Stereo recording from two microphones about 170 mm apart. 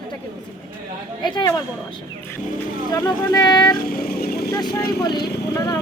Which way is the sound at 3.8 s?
60° left (ahead or behind).